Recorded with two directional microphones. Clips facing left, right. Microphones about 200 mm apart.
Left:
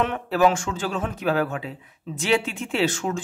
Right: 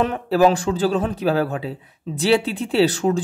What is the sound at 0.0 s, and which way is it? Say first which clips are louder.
Speech: right 4 dB; 35° right (ahead or behind).